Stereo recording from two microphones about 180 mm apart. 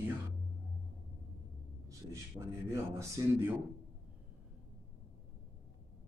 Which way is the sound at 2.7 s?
15° right (ahead or behind).